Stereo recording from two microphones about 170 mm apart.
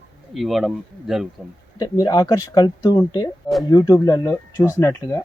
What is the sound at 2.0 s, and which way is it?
Speech, 20° left (ahead or behind).